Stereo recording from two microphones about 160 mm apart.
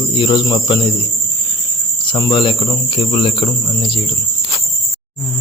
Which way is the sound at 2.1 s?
30° left (ahead or behind).